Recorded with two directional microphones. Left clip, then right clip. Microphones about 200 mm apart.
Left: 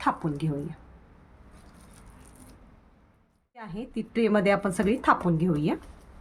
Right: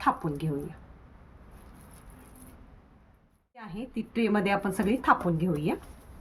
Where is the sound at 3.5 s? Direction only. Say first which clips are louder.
Left 2 dB; 20° left (ahead or behind).